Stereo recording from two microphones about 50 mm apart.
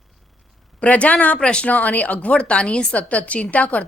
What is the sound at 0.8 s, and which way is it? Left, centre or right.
Speech, left.